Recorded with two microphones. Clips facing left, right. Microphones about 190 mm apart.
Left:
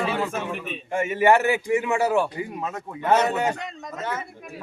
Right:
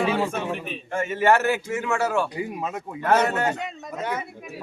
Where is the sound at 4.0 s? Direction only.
15° right (ahead or behind).